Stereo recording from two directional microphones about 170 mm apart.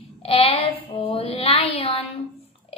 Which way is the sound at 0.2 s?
35° left (ahead or behind).